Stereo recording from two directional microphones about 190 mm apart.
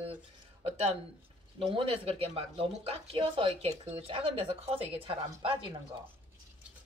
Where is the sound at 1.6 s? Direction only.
30° right (ahead or behind).